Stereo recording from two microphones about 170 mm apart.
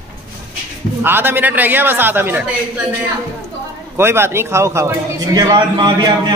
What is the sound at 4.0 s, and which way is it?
A man's voice, 15° right (ahead or behind).